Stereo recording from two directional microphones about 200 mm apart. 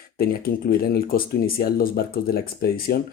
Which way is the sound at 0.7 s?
50° left (ahead or behind).